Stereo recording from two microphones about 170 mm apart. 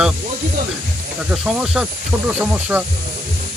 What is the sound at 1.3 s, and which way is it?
Speech, 5° right (ahead or behind).